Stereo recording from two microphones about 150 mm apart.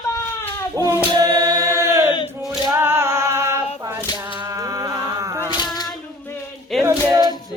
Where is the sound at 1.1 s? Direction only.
25° right (ahead or behind).